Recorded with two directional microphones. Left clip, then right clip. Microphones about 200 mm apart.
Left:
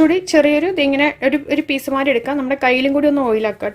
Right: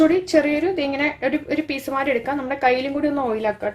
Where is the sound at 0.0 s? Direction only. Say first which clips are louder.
Left 4 dB; 40° left (ahead or behind).